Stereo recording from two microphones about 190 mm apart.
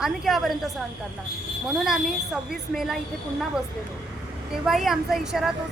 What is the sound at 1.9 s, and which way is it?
A woman's voice, centre (ahead or behind).